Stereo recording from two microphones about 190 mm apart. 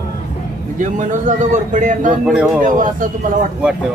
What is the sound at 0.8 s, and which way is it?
Speech, 40° right (ahead or behind).